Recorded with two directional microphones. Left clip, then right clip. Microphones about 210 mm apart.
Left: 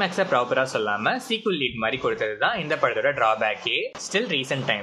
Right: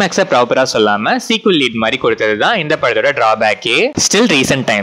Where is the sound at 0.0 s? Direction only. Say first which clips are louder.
Right 10 dB; 40° right (ahead or behind).